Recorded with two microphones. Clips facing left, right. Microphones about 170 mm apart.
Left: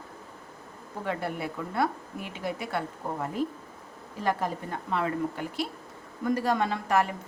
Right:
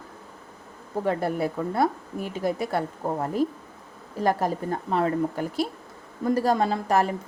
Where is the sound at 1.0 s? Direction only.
40° right (ahead or behind).